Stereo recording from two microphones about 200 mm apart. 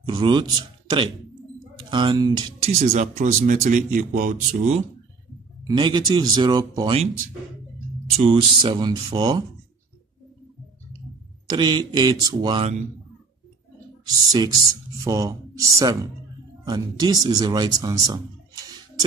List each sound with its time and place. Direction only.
0.0 s speech: 25° right (ahead or behind)
2.9 s speech: 40° right (ahead or behind)
5.6 s speech: 20° right (ahead or behind)
8.2 s speech: 25° right (ahead or behind)
11.4 s speech: 20° right (ahead or behind)
14.3 s speech: 20° right (ahead or behind)